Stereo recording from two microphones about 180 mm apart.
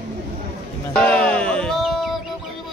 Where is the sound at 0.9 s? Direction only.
5° left (ahead or behind).